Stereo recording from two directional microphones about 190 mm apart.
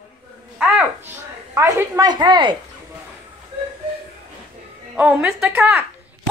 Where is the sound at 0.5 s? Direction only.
5° right (ahead or behind).